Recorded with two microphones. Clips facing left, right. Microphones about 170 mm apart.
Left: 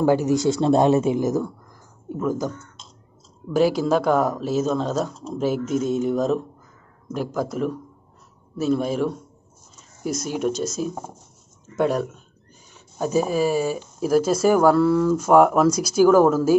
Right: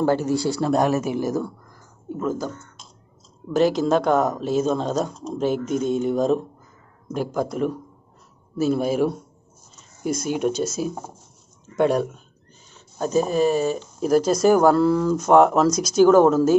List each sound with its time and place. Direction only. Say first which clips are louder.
0.0 s speech: left 2 dB; 15° left (ahead or behind)
3.5 s speech: even; 10° left (ahead or behind)